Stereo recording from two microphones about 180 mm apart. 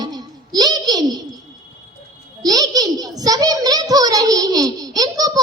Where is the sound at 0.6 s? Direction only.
20° right (ahead or behind).